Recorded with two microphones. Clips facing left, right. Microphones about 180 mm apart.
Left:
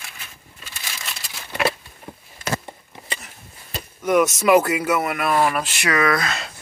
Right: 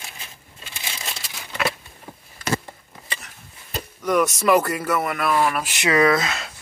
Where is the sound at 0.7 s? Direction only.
25° right (ahead or behind).